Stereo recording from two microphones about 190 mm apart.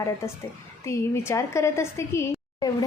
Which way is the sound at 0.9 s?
15° left (ahead or behind).